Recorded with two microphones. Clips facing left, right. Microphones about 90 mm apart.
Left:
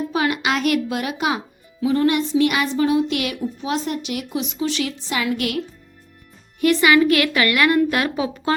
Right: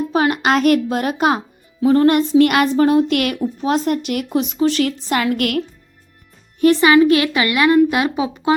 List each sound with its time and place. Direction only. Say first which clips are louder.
0.1 s a woman's voice: right 6 dB; 40° right (ahead or behind); by 5.6 s 55° right (ahead or behind)
6.6 s a woman's voice: right 4 dB; 30° right (ahead or behind)